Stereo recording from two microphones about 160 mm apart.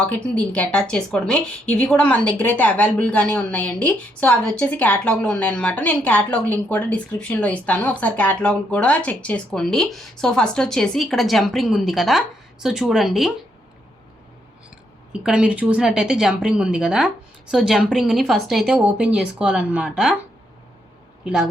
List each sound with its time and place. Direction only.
0.0 s a woman's voice: 10° left (ahead or behind)
15.1 s speech: 5° right (ahead or behind)